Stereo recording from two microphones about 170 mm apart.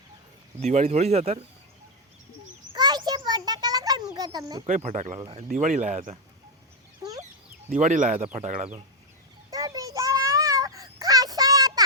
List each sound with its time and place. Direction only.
0.6 s speech: 40° right (ahead or behind)
2.7 s a sound: 25° right (ahead or behind)
4.6 s speech: 40° right (ahead or behind)
5.5 s speech: 50° right (ahead or behind)
7.0 s chicken: 20° right (ahead or behind)
7.7 s speech: 45° right (ahead or behind)
9.5 s child singing: 20° right (ahead or behind)